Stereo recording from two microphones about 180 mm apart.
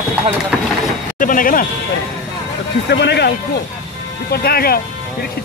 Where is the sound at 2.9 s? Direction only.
70° left (ahead or behind).